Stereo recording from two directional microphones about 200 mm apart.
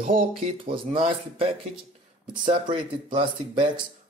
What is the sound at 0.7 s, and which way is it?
Speech, 25° right (ahead or behind).